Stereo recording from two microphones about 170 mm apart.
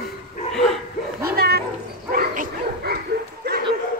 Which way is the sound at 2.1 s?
55° right (ahead or behind).